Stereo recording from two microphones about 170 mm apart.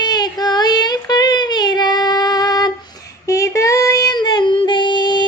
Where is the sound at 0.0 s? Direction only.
25° left (ahead or behind).